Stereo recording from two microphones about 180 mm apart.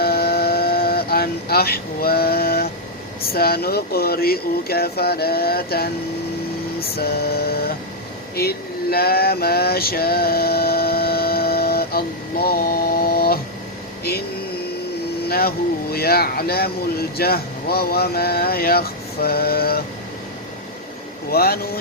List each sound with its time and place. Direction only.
0.0 s vehicle: 60° left (ahead or behind)
3.2 s speech: 60° left (ahead or behind)
6.9 s speech: 60° left (ahead or behind)
8.4 s male singing: 60° left (ahead or behind)
14.0 s a sound: 60° left (ahead or behind)
15.3 s speech: 55° left (ahead or behind)
21.2 s speech: 55° left (ahead or behind)